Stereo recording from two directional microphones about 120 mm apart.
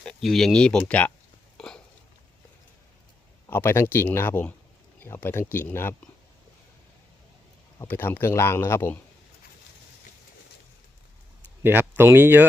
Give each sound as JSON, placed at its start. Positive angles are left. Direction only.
{"t": 0.0, "sound": "speech", "side_deg": 5}
{"t": 1.5, "sound": "a sound", "side_deg": 5}
{"t": 3.5, "sound": "speech", "side_deg": 20}
{"t": 7.8, "sound": "speech", "side_deg": 15}
{"t": 11.6, "sound": "speech", "side_deg": -20}